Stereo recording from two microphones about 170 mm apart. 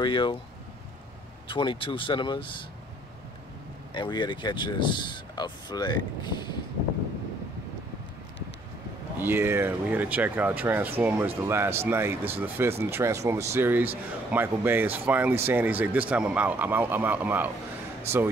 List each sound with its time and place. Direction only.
0.0 s speech: 30° left (ahead or behind)
1.5 s speech: 30° left (ahead or behind)
3.9 s speech: 25° left (ahead or behind)
9.2 s speech: 15° right (ahead or behind)